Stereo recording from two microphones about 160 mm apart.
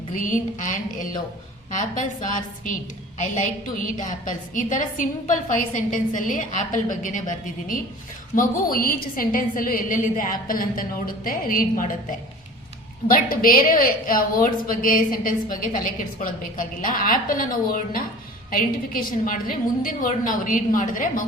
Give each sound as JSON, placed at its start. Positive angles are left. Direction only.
{"t": 0.1, "sound": "a woman's voice", "side_deg": 55}
{"t": 13.1, "sound": "a woman's voice", "side_deg": 65}